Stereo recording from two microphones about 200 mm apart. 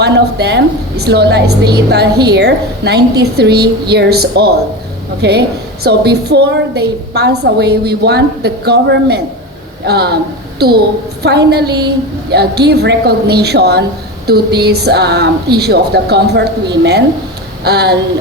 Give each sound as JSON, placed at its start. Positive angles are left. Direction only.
{"t": 0.0, "sound": "a woman's voice", "side_deg": -55}